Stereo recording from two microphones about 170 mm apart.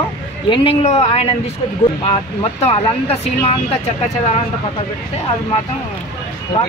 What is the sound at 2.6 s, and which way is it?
Speech, 35° left (ahead or behind).